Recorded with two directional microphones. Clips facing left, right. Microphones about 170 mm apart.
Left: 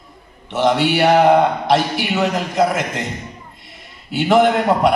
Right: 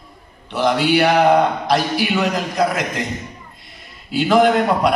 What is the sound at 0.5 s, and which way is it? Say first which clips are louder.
A man's voice: even; 25° left (ahead or behind).